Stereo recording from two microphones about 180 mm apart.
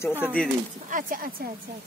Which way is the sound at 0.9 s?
50° right (ahead or behind).